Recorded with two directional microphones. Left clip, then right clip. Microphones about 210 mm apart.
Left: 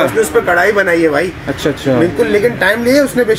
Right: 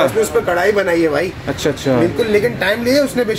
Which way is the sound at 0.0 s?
Centre (ahead or behind).